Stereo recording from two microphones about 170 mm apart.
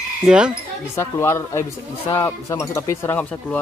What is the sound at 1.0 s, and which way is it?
Speech, 15° left (ahead or behind).